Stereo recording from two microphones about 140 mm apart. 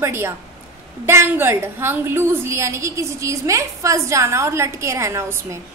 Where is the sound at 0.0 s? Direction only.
15° right (ahead or behind).